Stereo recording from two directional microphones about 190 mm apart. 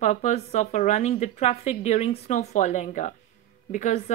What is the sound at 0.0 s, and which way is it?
A woman's voice, 35° left (ahead or behind).